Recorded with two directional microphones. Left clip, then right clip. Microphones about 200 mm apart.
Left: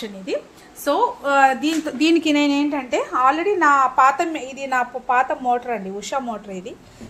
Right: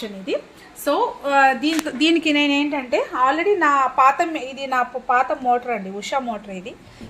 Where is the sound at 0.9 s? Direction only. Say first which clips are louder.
Left 1 dB; centre (ahead or behind).